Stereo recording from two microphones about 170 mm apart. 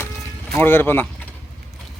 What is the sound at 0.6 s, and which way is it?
Speech, 10° left (ahead or behind).